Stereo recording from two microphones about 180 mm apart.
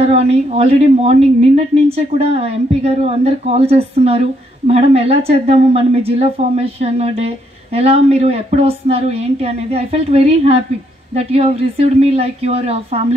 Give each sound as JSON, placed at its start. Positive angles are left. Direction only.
{"t": 0.0, "sound": "a woman's voice", "side_deg": -35}